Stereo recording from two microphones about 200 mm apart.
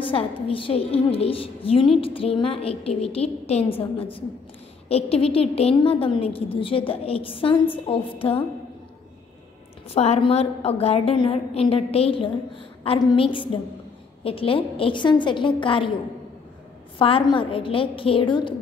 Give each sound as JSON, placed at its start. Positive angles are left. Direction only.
{"t": 0.0, "sound": "a woman's voice", "side_deg": 25}
{"t": 9.8, "sound": "a woman's voice", "side_deg": 30}
{"t": 17.0, "sound": "a woman's voice", "side_deg": 25}